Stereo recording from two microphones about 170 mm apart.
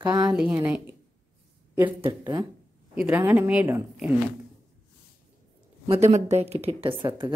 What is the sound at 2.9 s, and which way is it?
Speech, 10° right (ahead or behind).